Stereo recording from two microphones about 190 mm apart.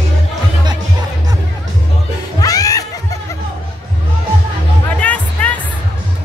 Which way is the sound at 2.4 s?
20° left (ahead or behind).